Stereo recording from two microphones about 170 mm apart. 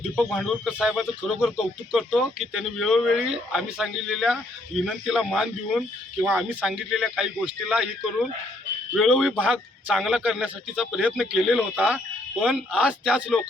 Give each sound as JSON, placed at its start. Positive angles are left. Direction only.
{"t": 0.3, "sound": "speech", "side_deg": 0}